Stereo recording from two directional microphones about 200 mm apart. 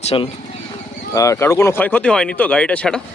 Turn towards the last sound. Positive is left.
turn(degrees=5)  # may be behind; listen again after turning